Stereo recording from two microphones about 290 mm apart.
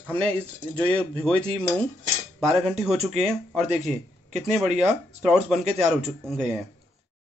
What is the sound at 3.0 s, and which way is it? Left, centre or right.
A man's voice, right.